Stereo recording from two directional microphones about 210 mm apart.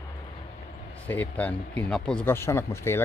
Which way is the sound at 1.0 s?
5° left (ahead or behind).